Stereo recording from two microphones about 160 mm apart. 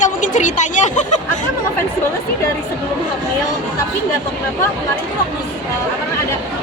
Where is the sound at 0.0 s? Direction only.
50° left (ahead or behind).